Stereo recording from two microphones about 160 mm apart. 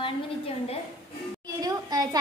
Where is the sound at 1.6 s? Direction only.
25° right (ahead or behind).